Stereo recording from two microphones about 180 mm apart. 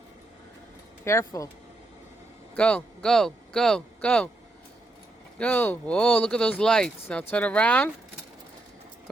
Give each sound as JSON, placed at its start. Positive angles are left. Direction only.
{"t": 1.0, "sound": "speech", "side_deg": 15}
{"t": 2.6, "sound": "speech", "side_deg": 5}
{"t": 5.4, "sound": "speech", "side_deg": 10}